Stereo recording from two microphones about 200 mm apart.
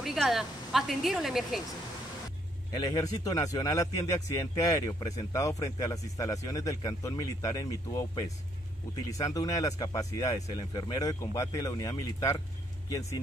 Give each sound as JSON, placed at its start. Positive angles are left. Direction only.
{"t": 0.0, "sound": "speech", "side_deg": 0}
{"t": 2.7, "sound": "a man's voice", "side_deg": 20}